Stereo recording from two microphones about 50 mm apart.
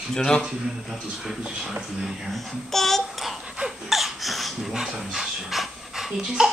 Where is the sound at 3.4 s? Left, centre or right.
Centre.